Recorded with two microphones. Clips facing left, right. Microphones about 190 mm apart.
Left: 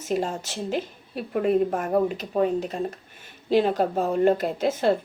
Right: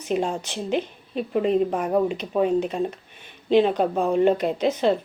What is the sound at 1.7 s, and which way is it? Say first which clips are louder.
Speech: right 1 dB; 45° left (ahead or behind).